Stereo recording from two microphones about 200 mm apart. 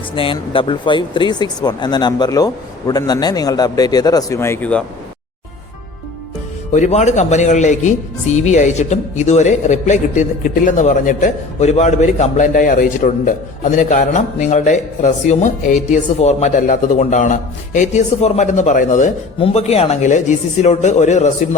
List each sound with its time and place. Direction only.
0.2 s speech: 25° left (ahead or behind); by 4.8 s 10° left (ahead or behind)
6.7 s speech: 35° left (ahead or behind)